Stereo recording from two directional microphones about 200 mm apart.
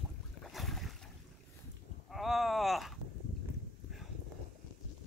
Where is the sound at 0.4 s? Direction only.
Centre (ahead or behind).